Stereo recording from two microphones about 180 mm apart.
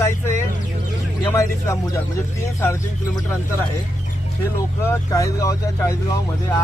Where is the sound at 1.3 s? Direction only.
15° left (ahead or behind).